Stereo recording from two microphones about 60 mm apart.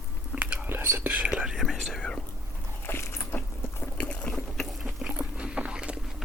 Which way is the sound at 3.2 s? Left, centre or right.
Left.